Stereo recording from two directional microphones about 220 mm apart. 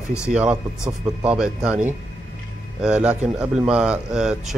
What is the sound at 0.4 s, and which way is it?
Speech, 5° right (ahead or behind).